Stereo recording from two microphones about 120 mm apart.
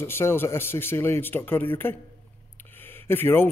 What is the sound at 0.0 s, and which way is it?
Speech, 20° left (ahead or behind).